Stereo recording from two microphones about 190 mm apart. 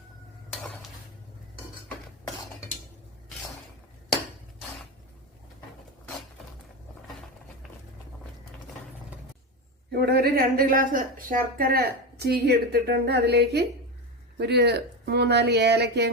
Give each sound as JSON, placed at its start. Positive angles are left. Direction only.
{"t": 9.9, "sound": "speech", "side_deg": -55}